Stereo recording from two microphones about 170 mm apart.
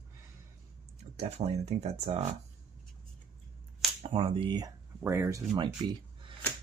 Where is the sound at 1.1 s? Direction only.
40° right (ahead or behind).